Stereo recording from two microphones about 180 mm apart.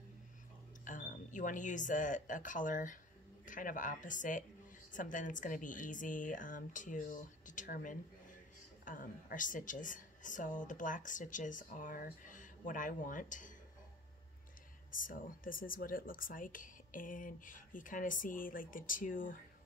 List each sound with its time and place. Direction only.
0.8 s speech: 45° left (ahead or behind)
14.9 s speech: 50° left (ahead or behind)